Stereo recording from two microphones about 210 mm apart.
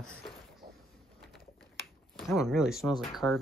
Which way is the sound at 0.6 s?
45° right (ahead or behind).